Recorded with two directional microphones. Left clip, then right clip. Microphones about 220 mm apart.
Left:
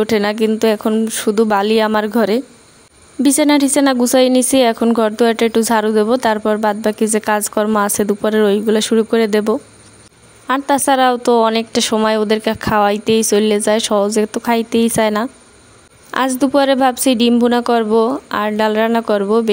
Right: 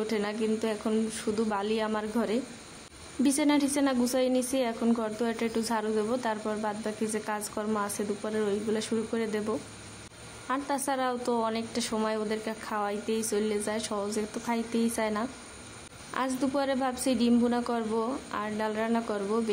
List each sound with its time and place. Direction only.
0.0 s a woman's voice: 40° left (ahead or behind)